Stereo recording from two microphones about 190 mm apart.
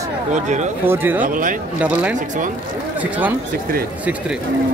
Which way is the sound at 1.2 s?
45° right (ahead or behind).